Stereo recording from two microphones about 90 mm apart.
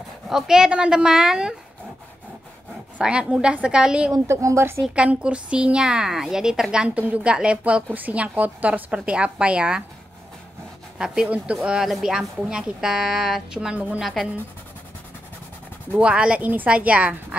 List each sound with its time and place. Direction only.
0.3 s a woman's voice: 5° right (ahead or behind)
3.0 s a woman's voice: 10° right (ahead or behind)
4.1 s a woman's voice: 35° right (ahead or behind)
4.9 s a woman's voice: 10° right (ahead or behind)
11.0 s a woman's voice: 10° right (ahead or behind)
14.0 s speech: centre (ahead or behind)
15.9 s a woman's voice: 15° right (ahead or behind)